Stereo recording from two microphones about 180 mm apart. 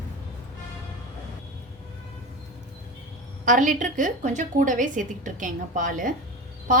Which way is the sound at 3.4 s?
45° right (ahead or behind).